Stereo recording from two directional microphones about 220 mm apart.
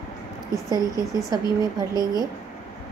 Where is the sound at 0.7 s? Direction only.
15° left (ahead or behind).